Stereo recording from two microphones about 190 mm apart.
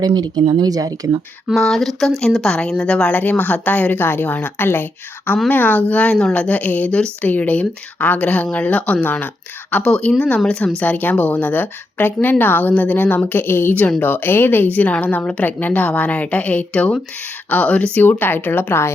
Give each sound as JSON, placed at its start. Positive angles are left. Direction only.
{"t": 0.0, "sound": "speech", "side_deg": -20}
{"t": 1.5, "sound": "speech", "side_deg": 0}